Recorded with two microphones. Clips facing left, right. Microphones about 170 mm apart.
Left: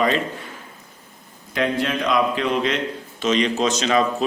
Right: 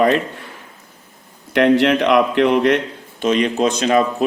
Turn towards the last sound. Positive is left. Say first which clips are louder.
# right 4 dB
turn(degrees=-55)  # may be behind; listen again after turning